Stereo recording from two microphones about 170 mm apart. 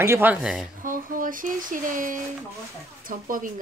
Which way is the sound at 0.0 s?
15° right (ahead or behind).